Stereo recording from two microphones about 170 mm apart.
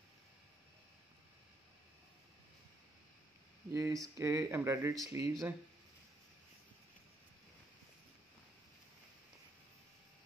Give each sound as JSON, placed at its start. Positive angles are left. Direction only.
{"t": 3.7, "sound": "speech", "side_deg": -20}